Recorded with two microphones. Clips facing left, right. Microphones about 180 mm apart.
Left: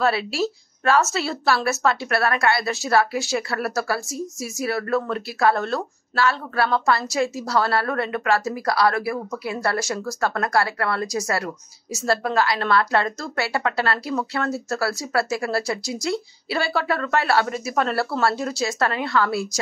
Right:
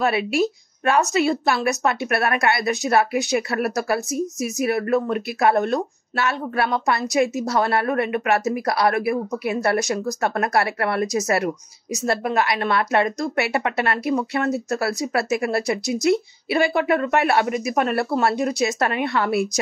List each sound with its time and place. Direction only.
0.3 s speech: 15° right (ahead or behind)